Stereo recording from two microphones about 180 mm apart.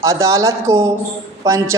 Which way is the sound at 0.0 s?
15° right (ahead or behind).